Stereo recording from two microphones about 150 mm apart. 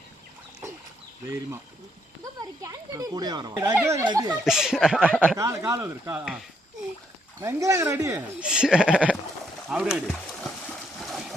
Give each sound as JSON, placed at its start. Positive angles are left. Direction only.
{"t": 2.4, "sound": "speech", "side_deg": -20}
{"t": 4.4, "sound": "speech", "side_deg": -5}
{"t": 5.4, "sound": "speech", "side_deg": -20}
{"t": 7.3, "sound": "speech", "side_deg": -20}
{"t": 8.4, "sound": "speech", "side_deg": -5}
{"t": 11.0, "sound": "a sound", "side_deg": 0}